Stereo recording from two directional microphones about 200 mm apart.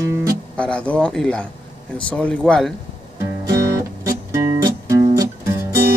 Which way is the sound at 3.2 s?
20° right (ahead or behind).